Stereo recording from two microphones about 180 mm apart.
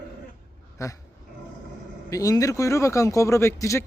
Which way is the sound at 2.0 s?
20° left (ahead or behind).